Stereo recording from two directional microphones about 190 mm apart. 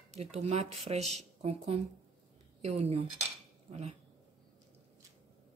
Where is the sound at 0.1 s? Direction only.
35° right (ahead or behind).